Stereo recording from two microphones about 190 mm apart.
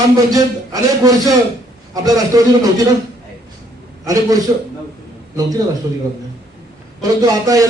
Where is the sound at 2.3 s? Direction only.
20° right (ahead or behind).